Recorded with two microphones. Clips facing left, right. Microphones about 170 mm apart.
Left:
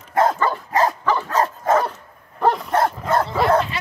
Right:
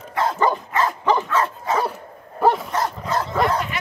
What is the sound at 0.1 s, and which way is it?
Dog, 45° left (ahead or behind).